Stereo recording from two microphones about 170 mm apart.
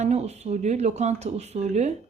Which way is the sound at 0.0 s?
40° right (ahead or behind).